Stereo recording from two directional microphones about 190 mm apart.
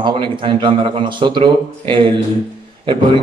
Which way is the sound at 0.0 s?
25° right (ahead or behind).